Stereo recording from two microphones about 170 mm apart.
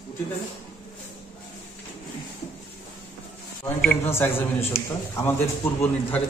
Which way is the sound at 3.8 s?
10° left (ahead or behind).